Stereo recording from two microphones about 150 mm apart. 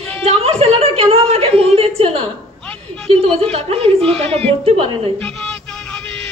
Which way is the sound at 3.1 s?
40° right (ahead or behind).